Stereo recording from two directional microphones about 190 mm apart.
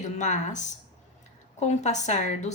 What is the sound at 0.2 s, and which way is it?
A woman's voice, 40° left (ahead or behind).